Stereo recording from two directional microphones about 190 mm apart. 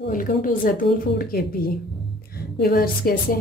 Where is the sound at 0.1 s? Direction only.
45° left (ahead or behind).